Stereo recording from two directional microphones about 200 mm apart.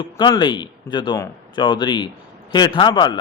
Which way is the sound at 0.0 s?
20° left (ahead or behind).